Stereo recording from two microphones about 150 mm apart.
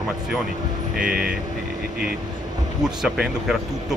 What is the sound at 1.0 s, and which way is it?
Speech, 5° right (ahead or behind).